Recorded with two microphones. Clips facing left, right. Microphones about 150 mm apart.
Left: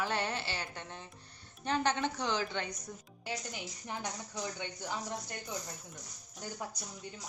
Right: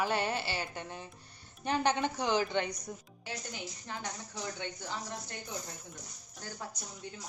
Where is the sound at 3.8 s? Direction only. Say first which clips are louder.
Left 3 dB; 15° left (ahead or behind).